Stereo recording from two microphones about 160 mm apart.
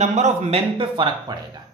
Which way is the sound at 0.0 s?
45° right (ahead or behind).